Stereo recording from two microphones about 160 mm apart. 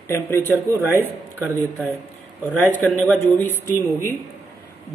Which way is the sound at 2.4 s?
10° left (ahead or behind).